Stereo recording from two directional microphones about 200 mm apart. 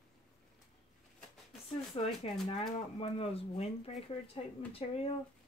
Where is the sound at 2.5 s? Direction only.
30° left (ahead or behind).